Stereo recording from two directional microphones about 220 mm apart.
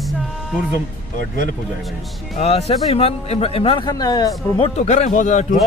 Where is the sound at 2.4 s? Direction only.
25° left (ahead or behind).